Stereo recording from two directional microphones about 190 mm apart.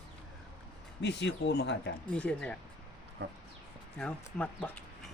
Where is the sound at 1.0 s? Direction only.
65° left (ahead or behind).